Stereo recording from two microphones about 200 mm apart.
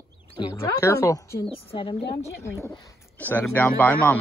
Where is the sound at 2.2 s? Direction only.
15° left (ahead or behind).